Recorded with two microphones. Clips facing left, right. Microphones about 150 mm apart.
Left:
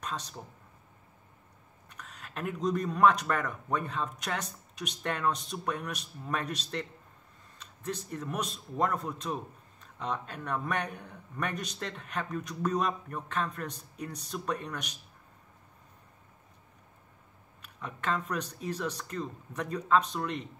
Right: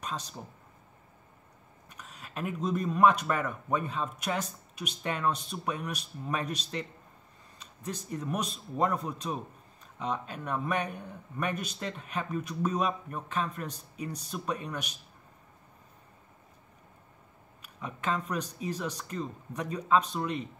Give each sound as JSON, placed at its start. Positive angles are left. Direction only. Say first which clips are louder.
{"t": 1.9, "sound": "speech", "louder": "even", "side_deg": -10}
{"t": 17.7, "sound": "speech", "louder": "right 1 dB", "side_deg": -10}